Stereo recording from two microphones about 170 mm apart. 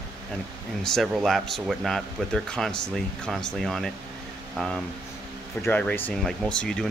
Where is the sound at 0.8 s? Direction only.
Centre (ahead or behind).